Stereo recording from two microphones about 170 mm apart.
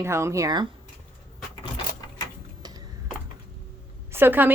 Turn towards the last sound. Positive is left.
turn(degrees=-10)  # may be behind; listen again after turning